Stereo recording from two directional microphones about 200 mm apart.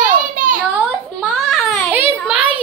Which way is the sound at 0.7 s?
5° right (ahead or behind).